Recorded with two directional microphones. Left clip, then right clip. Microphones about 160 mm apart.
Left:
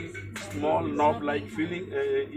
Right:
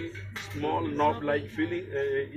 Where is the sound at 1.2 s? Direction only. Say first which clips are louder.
Right 1 dB; 55° left (ahead or behind).